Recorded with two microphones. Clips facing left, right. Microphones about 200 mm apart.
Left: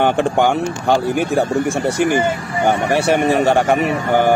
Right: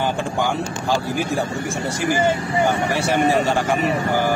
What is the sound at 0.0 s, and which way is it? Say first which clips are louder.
Speech: left 7 dB; 65° left (ahead or behind).